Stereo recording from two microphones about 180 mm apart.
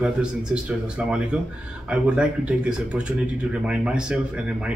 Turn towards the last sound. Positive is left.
turn(degrees=-5)  # may be behind; listen again after turning